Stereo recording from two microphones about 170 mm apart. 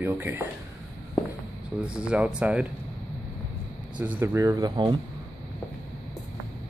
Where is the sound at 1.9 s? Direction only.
5° right (ahead or behind).